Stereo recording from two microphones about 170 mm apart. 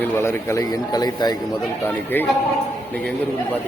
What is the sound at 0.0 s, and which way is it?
A man's voice, 15° left (ahead or behind).